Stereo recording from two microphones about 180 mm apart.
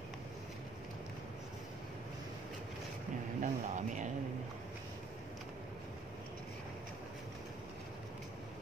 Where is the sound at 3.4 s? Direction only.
45° right (ahead or behind).